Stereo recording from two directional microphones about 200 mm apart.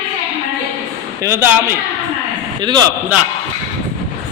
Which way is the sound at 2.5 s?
20° right (ahead or behind).